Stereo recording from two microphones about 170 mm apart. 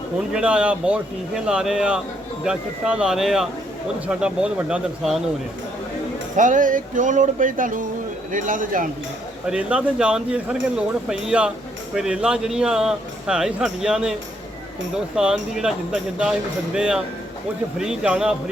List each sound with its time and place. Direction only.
0.3 s speech: 5° right (ahead or behind)
6.3 s speech: 50° right (ahead or behind)
9.5 s speech: 5° right (ahead or behind)